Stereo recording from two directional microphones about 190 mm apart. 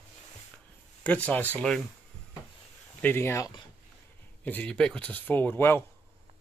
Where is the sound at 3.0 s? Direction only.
10° left (ahead or behind).